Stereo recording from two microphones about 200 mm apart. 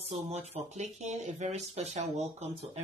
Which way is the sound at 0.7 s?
35° right (ahead or behind).